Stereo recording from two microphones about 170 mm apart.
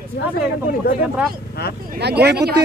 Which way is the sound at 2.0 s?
75° right (ahead or behind).